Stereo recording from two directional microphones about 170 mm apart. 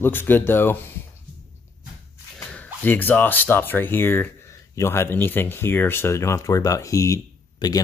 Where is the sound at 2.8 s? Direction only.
10° left (ahead or behind).